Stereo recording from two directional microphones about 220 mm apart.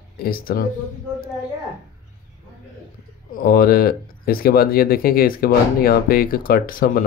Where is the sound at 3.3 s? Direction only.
40° left (ahead or behind).